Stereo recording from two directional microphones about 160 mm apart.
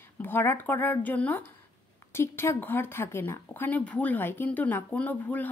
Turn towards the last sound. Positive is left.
turn(degrees=10)  # may be behind; listen again after turning